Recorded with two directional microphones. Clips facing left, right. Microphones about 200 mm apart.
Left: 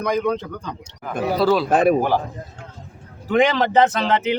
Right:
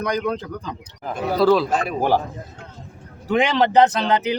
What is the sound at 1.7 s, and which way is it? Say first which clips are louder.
Speech: left 7 dB; 55° left (ahead or behind).